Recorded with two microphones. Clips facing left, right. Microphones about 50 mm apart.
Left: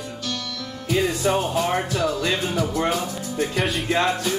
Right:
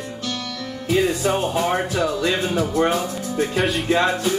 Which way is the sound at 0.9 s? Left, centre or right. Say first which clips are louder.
Right 1 dB; right.